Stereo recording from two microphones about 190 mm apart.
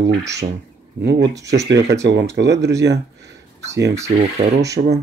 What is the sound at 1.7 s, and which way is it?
Speech, 60° right (ahead or behind).